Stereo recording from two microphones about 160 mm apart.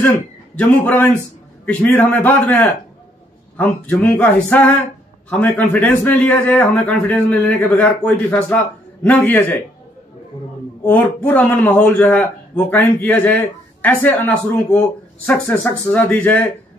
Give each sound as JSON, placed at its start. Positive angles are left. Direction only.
{"t": 0.6, "sound": "a man's voice", "side_deg": 10}
{"t": 10.8, "sound": "a man's voice", "side_deg": 10}